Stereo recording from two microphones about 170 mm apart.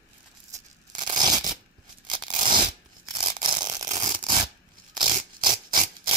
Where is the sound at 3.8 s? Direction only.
45° right (ahead or behind).